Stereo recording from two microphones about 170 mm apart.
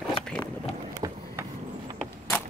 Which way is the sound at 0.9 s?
20° right (ahead or behind).